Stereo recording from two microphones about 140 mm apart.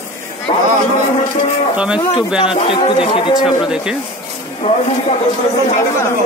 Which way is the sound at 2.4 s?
40° left (ahead or behind).